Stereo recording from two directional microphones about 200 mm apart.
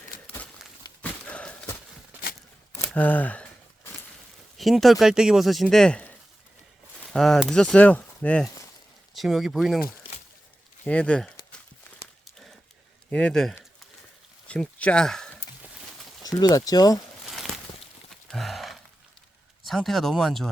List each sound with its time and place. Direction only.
1.2 s horse: 5° left (ahead or behind)
2.8 s speech: 5° left (ahead or behind)
4.5 s speech: centre (ahead or behind)
10.8 s speech: 5° left (ahead or behind)
13.1 s speech: 5° left (ahead or behind)
14.4 s a sound: 5° left (ahead or behind)
16.2 s speech: 15° left (ahead or behind)
17.2 s walk: centre (ahead or behind)
18.3 s a sound: centre (ahead or behind)
19.6 s speech: centre (ahead or behind)